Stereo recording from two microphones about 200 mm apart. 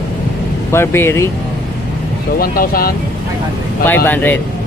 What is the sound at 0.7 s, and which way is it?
Speech, 10° left (ahead or behind).